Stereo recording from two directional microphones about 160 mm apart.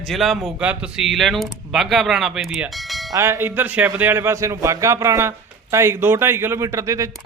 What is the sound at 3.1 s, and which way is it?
A man's voice, 20° right (ahead or behind).